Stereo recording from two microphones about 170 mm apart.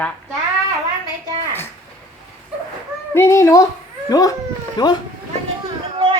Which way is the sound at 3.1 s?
15° left (ahead or behind).